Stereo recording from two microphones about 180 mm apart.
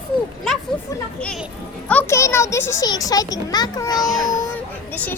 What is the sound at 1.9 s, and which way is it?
A child's voice, 10° left (ahead or behind).